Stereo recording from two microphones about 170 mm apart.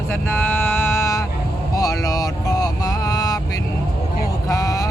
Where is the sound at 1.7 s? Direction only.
20° left (ahead or behind).